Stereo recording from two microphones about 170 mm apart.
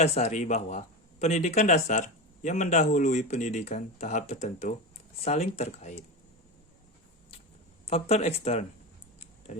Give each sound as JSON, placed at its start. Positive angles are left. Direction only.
{"t": 0.0, "sound": "speech", "side_deg": 40}
{"t": 7.9, "sound": "speech", "side_deg": 35}